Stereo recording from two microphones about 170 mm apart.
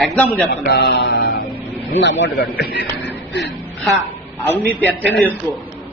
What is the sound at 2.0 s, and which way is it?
Music, 90° left.